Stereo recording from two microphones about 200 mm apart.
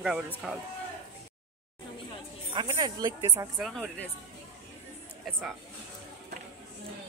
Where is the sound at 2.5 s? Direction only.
20° right (ahead or behind).